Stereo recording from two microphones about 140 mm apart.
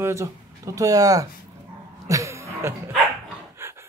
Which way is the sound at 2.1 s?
20° right (ahead or behind).